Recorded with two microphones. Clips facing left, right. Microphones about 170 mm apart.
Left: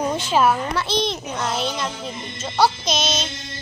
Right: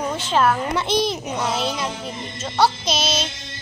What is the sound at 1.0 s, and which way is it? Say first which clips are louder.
Speech: right 2 dB; 5° right (ahead or behind).